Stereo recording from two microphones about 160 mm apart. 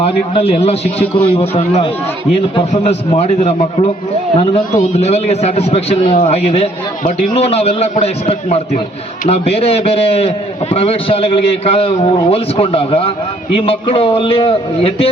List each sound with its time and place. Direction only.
0.0 s a man's voice: 35° left (ahead or behind)